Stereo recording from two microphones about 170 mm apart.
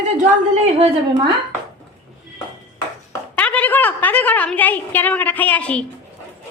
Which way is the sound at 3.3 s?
10° left (ahead or behind).